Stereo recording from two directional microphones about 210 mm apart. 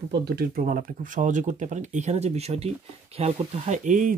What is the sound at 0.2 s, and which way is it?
Speech, 50° right (ahead or behind).